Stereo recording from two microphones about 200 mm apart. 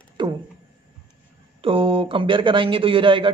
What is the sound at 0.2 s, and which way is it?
Music, 25° right (ahead or behind).